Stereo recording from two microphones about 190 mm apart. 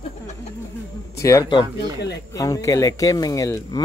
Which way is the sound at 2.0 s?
60° left (ahead or behind).